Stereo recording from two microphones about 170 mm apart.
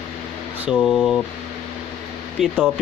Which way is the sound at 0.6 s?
Centre (ahead or behind).